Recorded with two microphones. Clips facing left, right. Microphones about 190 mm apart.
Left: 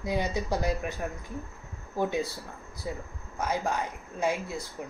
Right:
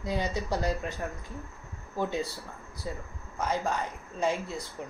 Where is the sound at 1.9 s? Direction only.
15° left (ahead or behind).